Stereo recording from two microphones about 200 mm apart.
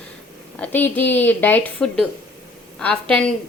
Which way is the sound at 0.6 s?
10° left (ahead or behind).